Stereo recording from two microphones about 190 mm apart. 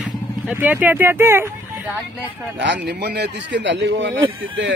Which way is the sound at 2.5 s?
70° right (ahead or behind).